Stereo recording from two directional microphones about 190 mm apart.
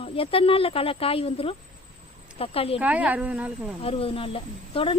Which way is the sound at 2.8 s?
5° right (ahead or behind).